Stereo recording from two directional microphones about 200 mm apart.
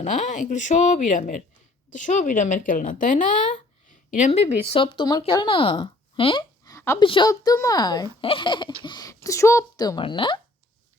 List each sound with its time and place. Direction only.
0.0 s speech: 40° left (ahead or behind); by 7.0 s 15° left (ahead or behind)
7.0 s speech: 25° left (ahead or behind)